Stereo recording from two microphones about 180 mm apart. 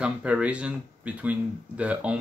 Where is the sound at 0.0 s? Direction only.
5° right (ahead or behind).